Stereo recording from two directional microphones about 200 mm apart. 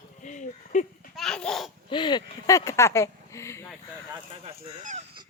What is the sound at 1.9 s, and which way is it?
Speech, 25° left (ahead or behind).